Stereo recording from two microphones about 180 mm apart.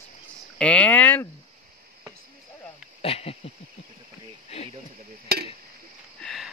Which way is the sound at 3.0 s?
35° left (ahead or behind).